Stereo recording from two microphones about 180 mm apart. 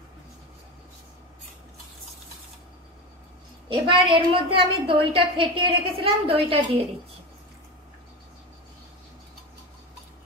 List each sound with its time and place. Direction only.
3.6 s a woman's voice: 30° right (ahead or behind)